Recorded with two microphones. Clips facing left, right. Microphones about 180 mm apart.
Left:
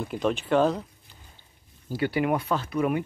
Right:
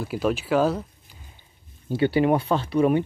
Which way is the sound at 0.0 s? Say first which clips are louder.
Right 2 dB; 5° right (ahead or behind).